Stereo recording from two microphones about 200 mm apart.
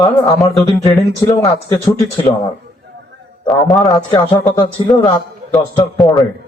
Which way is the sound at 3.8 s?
20° left (ahead or behind).